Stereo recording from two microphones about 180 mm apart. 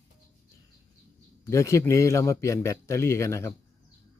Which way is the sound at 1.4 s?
15° left (ahead or behind).